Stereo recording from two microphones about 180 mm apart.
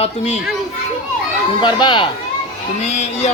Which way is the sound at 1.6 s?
25° left (ahead or behind).